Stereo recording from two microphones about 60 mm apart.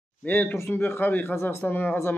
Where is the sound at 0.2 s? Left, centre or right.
Left.